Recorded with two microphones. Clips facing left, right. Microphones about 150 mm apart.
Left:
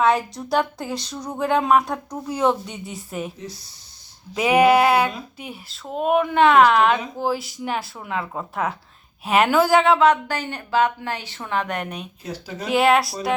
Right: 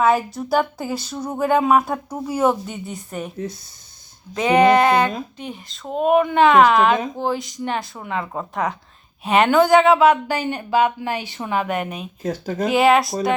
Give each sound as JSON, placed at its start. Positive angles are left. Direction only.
{"t": 0.0, "sound": "speech", "side_deg": -5}
{"t": 3.3, "sound": "speech", "side_deg": -55}
{"t": 4.4, "sound": "speech", "side_deg": 5}
{"t": 12.2, "sound": "speech", "side_deg": -50}
{"t": 12.6, "sound": "speech", "side_deg": 0}